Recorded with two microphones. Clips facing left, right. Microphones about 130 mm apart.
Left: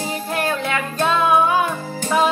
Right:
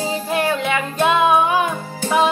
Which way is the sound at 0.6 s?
15° right (ahead or behind).